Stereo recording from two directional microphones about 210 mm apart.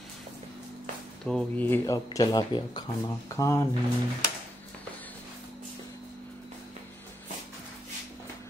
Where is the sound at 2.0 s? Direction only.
20° left (ahead or behind).